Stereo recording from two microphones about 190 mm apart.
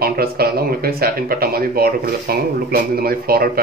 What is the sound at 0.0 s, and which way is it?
Speech, 55° right (ahead or behind).